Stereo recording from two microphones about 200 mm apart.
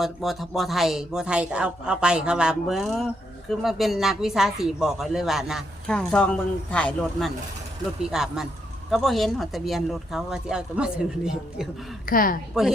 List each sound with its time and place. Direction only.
0.0 s speech: centre (ahead or behind)
12.0 s speech: 45° left (ahead or behind)